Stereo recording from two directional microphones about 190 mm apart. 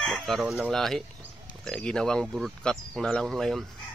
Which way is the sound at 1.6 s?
5° left (ahead or behind).